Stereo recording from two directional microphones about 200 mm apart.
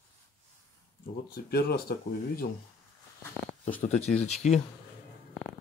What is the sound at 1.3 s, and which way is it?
Speech, 50° left (ahead or behind).